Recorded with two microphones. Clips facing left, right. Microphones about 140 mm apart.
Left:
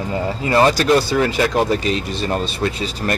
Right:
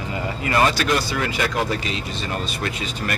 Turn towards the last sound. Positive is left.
turn(degrees=35)  # may be behind; listen again after turning